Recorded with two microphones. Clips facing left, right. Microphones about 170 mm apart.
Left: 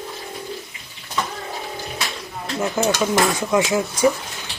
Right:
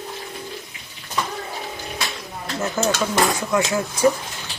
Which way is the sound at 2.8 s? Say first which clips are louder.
Left 1 dB; 15° left (ahead or behind).